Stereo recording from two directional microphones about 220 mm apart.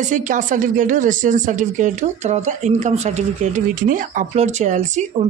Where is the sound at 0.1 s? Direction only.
35° right (ahead or behind).